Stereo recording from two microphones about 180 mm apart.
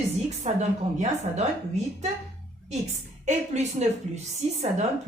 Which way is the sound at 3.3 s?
40° right (ahead or behind).